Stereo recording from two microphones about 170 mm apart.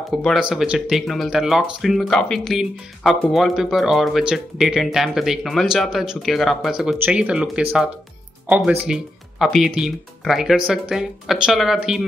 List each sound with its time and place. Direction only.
0.1 s speech: centre (ahead or behind)